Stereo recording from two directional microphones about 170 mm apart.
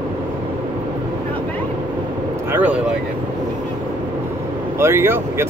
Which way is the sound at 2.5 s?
10° right (ahead or behind).